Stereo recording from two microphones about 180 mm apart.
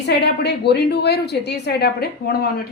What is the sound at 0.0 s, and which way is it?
A woman's voice, 65° left (ahead or behind).